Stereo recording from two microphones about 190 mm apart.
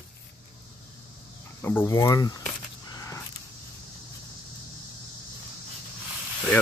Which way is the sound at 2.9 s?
15° left (ahead or behind).